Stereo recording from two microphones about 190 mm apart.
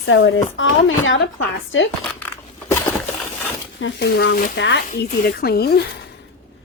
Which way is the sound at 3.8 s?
65° left (ahead or behind).